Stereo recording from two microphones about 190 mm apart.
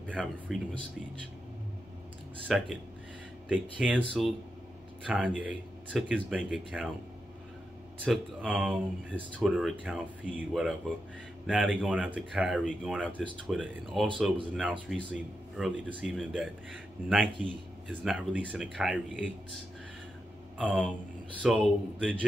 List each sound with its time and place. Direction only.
0.2 s speech: centre (ahead or behind)
2.4 s speech: centre (ahead or behind)
5.0 s speech: 5° right (ahead or behind)
8.0 s speech: centre (ahead or behind)
20.5 s speech: 5° right (ahead or behind)